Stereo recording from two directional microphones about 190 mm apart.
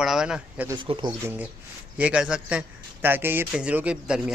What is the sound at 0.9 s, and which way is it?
Speech, 30° right (ahead or behind).